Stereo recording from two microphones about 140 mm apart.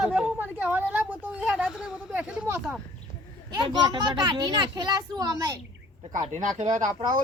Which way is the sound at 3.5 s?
35° right (ahead or behind).